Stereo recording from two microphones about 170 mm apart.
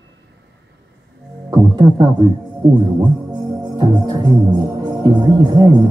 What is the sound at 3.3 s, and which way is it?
Music, 25° right (ahead or behind).